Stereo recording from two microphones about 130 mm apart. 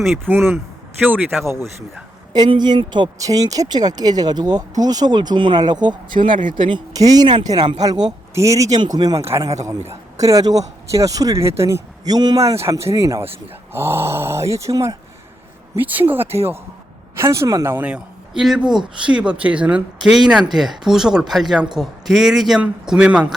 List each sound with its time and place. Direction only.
0.3 s speech: 20° right (ahead or behind)
2.3 s speech: 35° right (ahead or behind)
12.5 s a man's voice: 20° right (ahead or behind)